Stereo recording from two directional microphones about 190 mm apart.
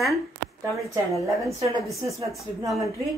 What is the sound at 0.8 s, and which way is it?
Speech, 15° right (ahead or behind).